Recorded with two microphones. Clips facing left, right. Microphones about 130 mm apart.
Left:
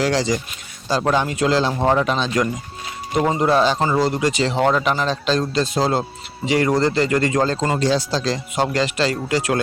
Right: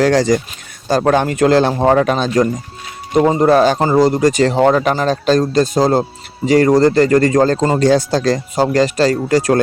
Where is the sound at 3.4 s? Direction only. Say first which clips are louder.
Right 6 dB; 50° right (ahead or behind).